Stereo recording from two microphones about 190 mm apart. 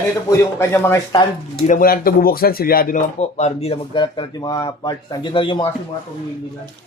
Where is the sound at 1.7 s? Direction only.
45° left (ahead or behind); by 5.6 s 25° left (ahead or behind).